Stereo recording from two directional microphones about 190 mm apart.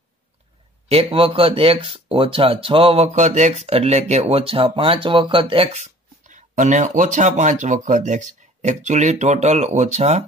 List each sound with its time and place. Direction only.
0.8 s speech: 30° right (ahead or behind)